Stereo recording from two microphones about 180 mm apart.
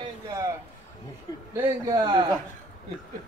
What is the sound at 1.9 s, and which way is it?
Speech, 25° right (ahead or behind).